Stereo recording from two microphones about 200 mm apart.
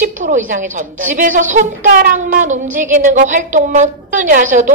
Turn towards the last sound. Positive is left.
turn(degrees=-40)  # may be behind; listen again after turning